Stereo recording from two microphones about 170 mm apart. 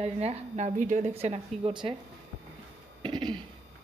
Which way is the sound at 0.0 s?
40° right (ahead or behind).